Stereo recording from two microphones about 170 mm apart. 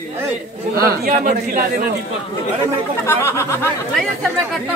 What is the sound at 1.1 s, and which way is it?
Speech, 50° right (ahead or behind).